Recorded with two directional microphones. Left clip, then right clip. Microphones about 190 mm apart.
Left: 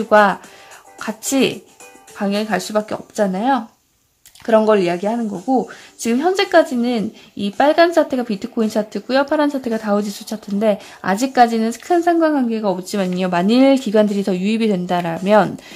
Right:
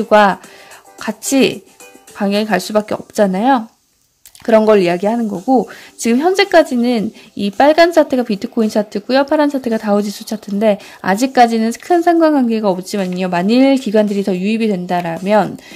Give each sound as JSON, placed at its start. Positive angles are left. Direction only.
{"t": 0.1, "sound": "speech", "side_deg": -15}
{"t": 4.6, "sound": "speech", "side_deg": -25}